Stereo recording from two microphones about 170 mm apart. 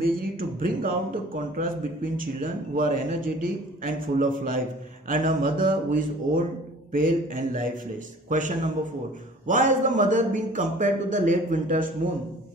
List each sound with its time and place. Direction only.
0.0 s speech: 55° right (ahead or behind)
2.1 s a man's voice: 55° right (ahead or behind)